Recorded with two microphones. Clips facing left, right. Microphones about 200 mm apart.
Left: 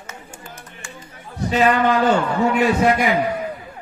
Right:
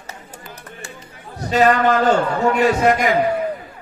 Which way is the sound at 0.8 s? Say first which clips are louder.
Even; 35° right (ahead or behind).